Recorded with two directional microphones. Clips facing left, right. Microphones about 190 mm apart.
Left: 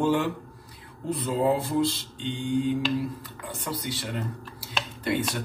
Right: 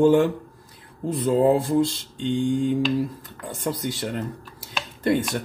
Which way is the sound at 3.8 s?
45° right (ahead or behind).